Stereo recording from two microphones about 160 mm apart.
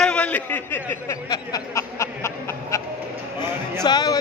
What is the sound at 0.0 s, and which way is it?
A man's voice, 5° left (ahead or behind).